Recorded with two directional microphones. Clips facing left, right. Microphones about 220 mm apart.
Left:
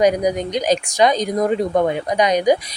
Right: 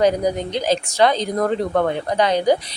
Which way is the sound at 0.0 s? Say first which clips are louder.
Left 1 dB; 15° left (ahead or behind).